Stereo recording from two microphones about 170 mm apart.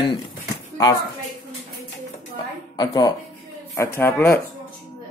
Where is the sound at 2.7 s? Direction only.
25° left (ahead or behind).